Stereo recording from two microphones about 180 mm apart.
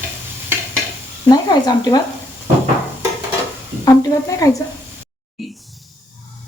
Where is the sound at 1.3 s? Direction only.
20° left (ahead or behind).